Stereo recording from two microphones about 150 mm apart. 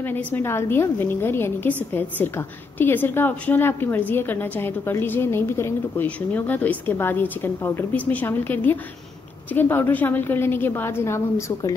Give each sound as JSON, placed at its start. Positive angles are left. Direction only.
{"t": 0.0, "sound": "a woman's voice", "side_deg": 15}